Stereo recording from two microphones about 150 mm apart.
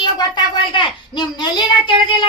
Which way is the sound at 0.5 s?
35° left (ahead or behind).